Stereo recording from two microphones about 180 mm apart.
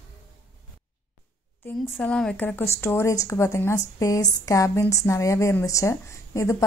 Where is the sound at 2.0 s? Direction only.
5° left (ahead or behind).